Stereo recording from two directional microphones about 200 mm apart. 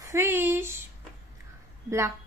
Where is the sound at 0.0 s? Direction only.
15° right (ahead or behind).